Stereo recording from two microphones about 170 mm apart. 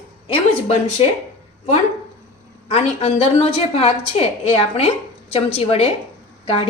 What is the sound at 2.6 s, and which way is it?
A woman's voice, 35° left (ahead or behind).